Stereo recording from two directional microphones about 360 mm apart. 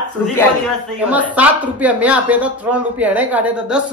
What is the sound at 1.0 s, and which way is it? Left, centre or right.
Speech, centre.